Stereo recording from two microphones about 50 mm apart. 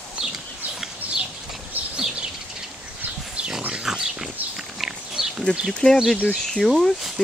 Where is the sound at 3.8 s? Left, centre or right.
Centre.